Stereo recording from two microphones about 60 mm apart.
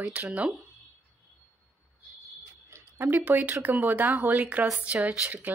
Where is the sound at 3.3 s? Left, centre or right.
Right.